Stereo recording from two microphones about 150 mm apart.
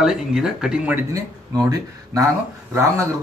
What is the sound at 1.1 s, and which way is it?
Speech, 25° right (ahead or behind).